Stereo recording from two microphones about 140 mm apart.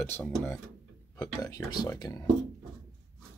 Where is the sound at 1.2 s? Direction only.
25° left (ahead or behind).